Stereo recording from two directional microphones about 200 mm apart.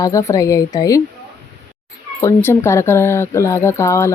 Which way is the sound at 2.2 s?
15° left (ahead or behind).